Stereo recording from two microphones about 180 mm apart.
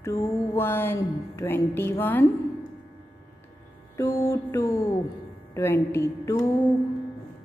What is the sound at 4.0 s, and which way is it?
A woman's voice, 15° left (ahead or behind).